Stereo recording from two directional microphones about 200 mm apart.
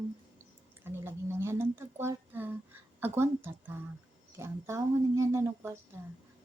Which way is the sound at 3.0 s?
10° right (ahead or behind).